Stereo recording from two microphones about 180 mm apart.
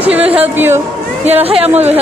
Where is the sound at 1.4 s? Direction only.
35° right (ahead or behind).